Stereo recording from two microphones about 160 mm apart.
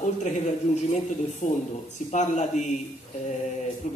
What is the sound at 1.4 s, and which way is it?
A man's voice, 55° left (ahead or behind).